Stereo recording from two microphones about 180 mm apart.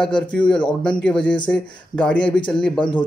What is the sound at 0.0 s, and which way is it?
Speech, 5° left (ahead or behind).